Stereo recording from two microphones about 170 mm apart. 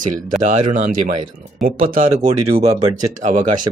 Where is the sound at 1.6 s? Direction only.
55° right (ahead or behind).